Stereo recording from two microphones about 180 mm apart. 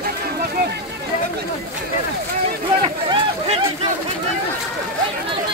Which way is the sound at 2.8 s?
25° right (ahead or behind).